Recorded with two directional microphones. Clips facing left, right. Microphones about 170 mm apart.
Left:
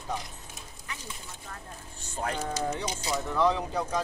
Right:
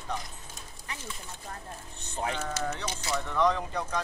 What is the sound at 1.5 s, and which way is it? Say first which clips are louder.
Speech: right 2 dB; 35° right (ahead or behind).